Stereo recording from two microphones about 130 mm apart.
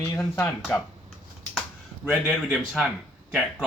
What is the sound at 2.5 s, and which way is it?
Speech, 5° right (ahead or behind).